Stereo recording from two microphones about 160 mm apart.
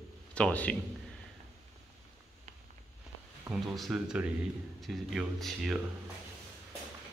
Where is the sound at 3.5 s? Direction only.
Centre (ahead or behind).